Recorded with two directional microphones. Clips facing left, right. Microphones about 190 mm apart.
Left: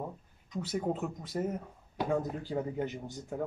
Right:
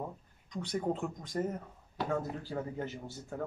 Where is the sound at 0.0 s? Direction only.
5° left (ahead or behind).